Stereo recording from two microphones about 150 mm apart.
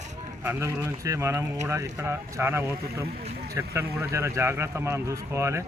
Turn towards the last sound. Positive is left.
turn(degrees=-20)  # may be behind; listen again after turning